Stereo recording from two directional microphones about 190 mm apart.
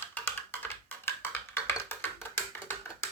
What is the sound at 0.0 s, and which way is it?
Typing, 10° left (ahead or behind).